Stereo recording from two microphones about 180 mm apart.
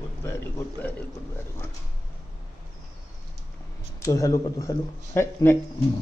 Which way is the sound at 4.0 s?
20° left (ahead or behind).